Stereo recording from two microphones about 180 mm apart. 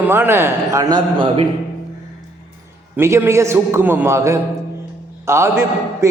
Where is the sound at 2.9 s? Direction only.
15° right (ahead or behind).